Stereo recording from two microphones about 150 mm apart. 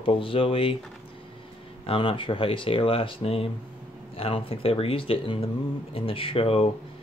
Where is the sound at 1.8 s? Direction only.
35° left (ahead or behind).